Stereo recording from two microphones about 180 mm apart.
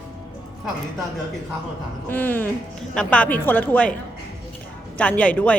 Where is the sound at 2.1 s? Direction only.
10° left (ahead or behind).